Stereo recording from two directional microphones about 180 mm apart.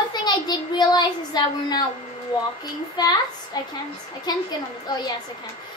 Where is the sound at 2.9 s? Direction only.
20° left (ahead or behind).